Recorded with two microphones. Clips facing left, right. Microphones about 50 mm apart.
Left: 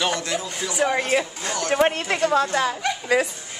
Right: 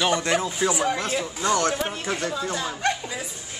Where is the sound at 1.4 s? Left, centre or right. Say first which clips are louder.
Right 5 dB; right.